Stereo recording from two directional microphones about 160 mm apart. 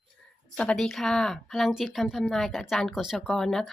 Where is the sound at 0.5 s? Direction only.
5° left (ahead or behind).